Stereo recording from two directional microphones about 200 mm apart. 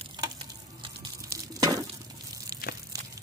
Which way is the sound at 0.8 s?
15° right (ahead or behind).